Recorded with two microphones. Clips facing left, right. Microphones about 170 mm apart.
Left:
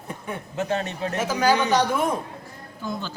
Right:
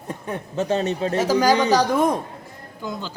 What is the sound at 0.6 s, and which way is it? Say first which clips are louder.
A woman's voice: right 5 dB; 30° right (ahead or behind).